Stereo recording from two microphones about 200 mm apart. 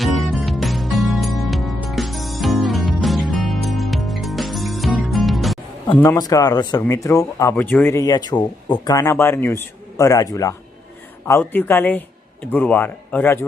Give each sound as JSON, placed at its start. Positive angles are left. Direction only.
{"t": 0.0, "sound": "music", "side_deg": 0}
{"t": 6.0, "sound": "speech", "side_deg": 15}